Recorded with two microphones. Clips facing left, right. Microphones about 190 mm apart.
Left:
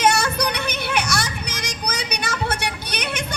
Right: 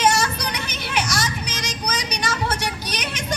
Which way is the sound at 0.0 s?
60° left (ahead or behind).